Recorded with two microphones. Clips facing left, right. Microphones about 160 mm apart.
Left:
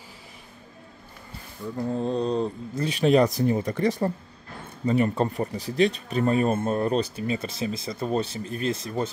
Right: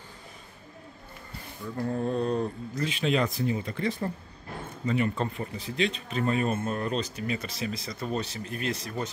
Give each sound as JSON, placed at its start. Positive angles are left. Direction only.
{"t": 1.8, "sound": "speech", "side_deg": 20}
{"t": 2.9, "sound": "speech", "side_deg": 40}